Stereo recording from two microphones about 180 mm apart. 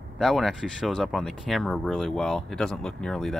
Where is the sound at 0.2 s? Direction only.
Centre (ahead or behind).